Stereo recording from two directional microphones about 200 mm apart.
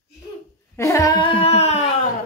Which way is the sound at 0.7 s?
15° left (ahead or behind).